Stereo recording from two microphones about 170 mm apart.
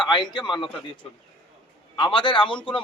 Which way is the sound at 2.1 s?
30° left (ahead or behind).